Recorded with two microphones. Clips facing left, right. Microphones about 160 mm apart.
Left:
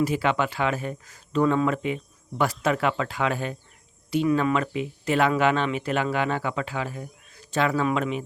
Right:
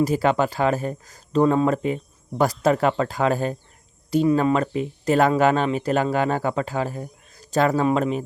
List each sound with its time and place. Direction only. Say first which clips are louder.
0.0 s speech: right 4 dB; 40° right (ahead or behind)